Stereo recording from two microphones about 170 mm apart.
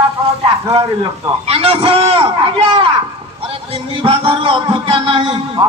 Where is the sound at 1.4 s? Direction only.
35° right (ahead or behind).